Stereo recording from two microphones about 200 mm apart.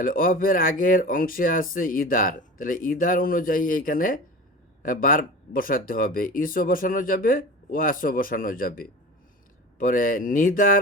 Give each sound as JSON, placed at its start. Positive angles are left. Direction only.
{"t": 0.0, "sound": "speech", "side_deg": 45}